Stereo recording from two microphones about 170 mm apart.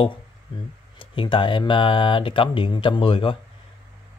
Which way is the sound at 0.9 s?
30° left (ahead or behind).